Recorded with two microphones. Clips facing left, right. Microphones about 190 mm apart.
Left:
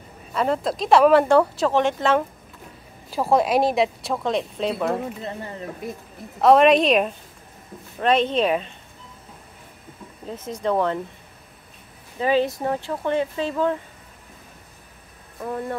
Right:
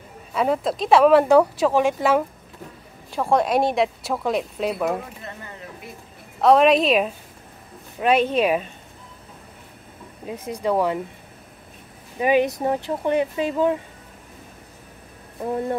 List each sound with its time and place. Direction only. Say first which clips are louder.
0.3 s speech: right 1 dB; 5° right (ahead or behind)
3.1 s speech: left 1 dB; 5° left (ahead or behind)
6.4 s speech: left 1 dB; centre (ahead or behind)
10.2 s speech: right 1 dB; 10° right (ahead or behind)
12.2 s speech: right 2 dB; 15° right (ahead or behind)